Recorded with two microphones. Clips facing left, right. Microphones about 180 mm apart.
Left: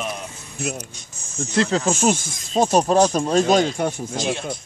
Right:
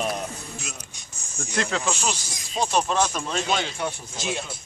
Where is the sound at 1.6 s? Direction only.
35° left (ahead or behind).